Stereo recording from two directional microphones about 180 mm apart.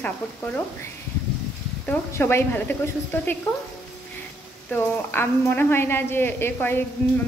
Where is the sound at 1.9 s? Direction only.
10° left (ahead or behind).